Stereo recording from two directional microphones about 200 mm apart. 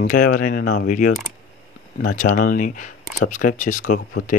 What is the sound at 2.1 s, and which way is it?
Speech, 40° left (ahead or behind).